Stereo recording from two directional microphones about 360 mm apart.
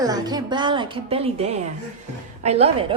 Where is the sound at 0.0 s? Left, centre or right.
Centre.